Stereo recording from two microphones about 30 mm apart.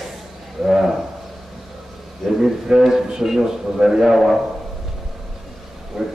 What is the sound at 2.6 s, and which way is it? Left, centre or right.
A man's voice, right.